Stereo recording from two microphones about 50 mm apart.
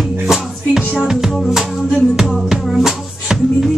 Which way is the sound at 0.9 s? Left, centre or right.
Centre.